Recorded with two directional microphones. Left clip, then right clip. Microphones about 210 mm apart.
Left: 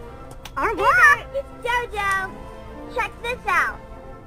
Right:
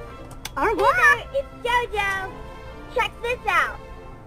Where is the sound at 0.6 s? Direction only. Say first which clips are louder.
Left 2 dB; centre (ahead or behind).